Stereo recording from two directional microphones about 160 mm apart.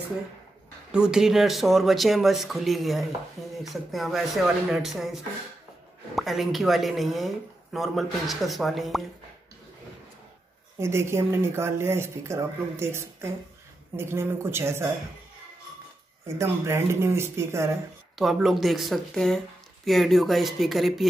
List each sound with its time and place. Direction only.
0.9 s speech: 5° right (ahead or behind)
10.8 s speech: 15° right (ahead or behind)
16.3 s speech: 15° right (ahead or behind)
18.1 s speech: centre (ahead or behind)